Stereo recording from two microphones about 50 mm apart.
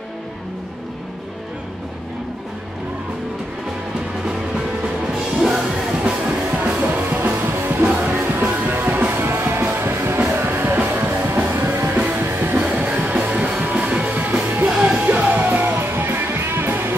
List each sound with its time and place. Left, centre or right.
4.6 s music: centre
6.4 s music: right
8.2 s music: right
12.6 s music: right